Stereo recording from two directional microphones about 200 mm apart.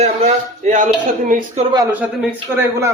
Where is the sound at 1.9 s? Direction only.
5° right (ahead or behind).